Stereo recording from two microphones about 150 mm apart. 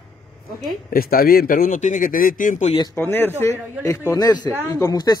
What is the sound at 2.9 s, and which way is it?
A man's voice, 15° left (ahead or behind).